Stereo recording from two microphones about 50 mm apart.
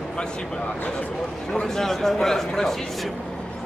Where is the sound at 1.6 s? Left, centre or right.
Centre.